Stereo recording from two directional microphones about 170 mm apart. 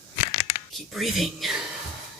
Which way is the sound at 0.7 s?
Centre (ahead or behind).